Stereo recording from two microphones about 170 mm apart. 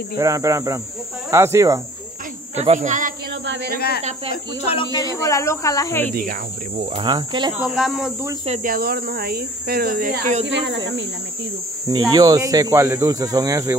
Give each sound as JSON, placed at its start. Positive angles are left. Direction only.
{"t": 0.2, "sound": "speech", "side_deg": -20}
{"t": 2.5, "sound": "speech", "side_deg": -40}
{"t": 3.4, "sound": "a sound", "side_deg": -80}
{"t": 4.9, "sound": "speech", "side_deg": 20}
{"t": 6.8, "sound": "speech", "side_deg": -30}
{"t": 7.5, "sound": "speech", "side_deg": -5}
{"t": 8.6, "sound": "speech", "side_deg": -60}
{"t": 10.4, "sound": "speech", "side_deg": -90}
{"t": 11.8, "sound": "speech", "side_deg": -25}